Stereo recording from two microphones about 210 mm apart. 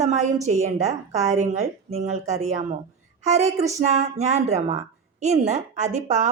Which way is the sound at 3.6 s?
30° right (ahead or behind).